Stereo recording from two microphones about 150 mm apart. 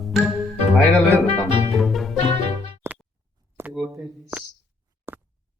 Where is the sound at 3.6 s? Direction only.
15° right (ahead or behind).